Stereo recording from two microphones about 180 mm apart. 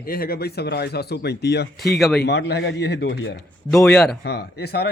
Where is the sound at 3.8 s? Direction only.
Centre (ahead or behind).